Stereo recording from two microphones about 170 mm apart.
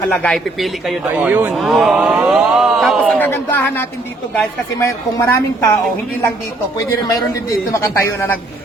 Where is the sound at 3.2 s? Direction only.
10° left (ahead or behind).